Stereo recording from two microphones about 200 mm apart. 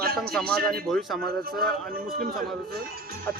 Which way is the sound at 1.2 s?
50° right (ahead or behind).